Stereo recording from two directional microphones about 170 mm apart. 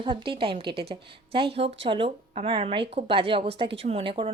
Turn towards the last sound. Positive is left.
turn(degrees=-30)  # may be behind; listen again after turning